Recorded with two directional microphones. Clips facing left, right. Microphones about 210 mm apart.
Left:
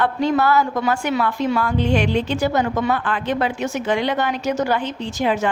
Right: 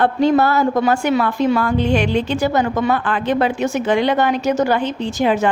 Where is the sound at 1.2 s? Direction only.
50° right (ahead or behind).